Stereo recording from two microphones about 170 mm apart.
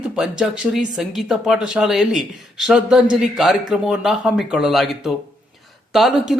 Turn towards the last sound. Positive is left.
turn(degrees=0)  # may be behind; listen again after turning